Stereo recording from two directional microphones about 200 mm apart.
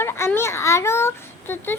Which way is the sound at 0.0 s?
10° left (ahead or behind).